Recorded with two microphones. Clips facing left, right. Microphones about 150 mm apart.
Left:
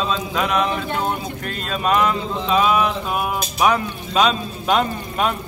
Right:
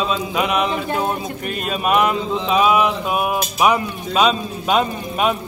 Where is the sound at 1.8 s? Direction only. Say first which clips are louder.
Right 1 dB; 10° right (ahead or behind).